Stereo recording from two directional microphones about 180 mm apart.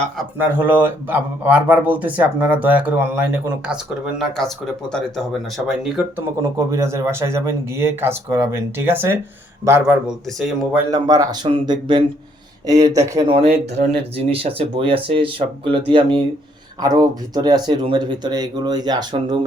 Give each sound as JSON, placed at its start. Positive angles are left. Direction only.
{"t": 0.2, "sound": "speech", "side_deg": -10}
{"t": 6.6, "sound": "speech", "side_deg": -15}
{"t": 10.9, "sound": "speech", "side_deg": -20}
{"t": 13.8, "sound": "speech", "side_deg": -35}